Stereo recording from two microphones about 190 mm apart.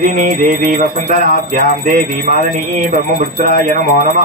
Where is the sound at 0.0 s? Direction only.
45° right (ahead or behind).